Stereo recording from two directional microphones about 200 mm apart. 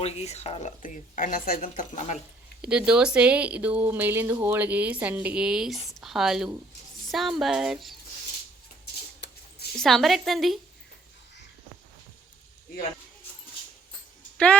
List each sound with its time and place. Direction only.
0.0 s speech: 30° left (ahead or behind)
2.6 s speech: 5° right (ahead or behind)
9.7 s speech: centre (ahead or behind)
14.3 s speech: 5° left (ahead or behind)